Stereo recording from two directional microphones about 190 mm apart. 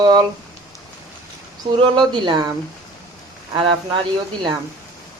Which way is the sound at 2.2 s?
25° right (ahead or behind).